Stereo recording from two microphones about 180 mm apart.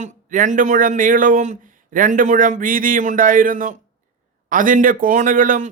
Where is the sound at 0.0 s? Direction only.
45° right (ahead or behind).